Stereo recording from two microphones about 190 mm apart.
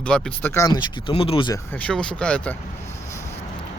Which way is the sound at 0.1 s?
10° left (ahead or behind).